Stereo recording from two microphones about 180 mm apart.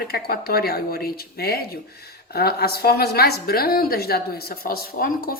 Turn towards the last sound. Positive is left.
turn(degrees=55)  # may be behind; listen again after turning